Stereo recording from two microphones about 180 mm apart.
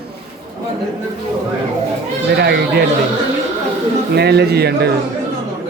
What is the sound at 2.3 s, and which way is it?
Speech, 65° right (ahead or behind).